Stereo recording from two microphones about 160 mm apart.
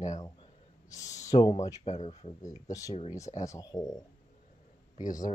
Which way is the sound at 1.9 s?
40° left (ahead or behind).